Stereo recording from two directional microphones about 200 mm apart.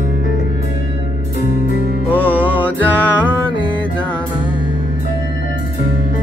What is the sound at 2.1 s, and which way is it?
Music, 10° left (ahead or behind).